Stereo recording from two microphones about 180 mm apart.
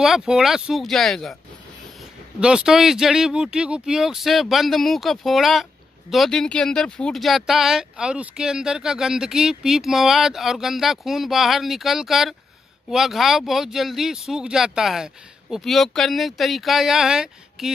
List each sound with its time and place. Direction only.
0.0 s speech: 5° right (ahead or behind)
2.4 s speech: 5° right (ahead or behind)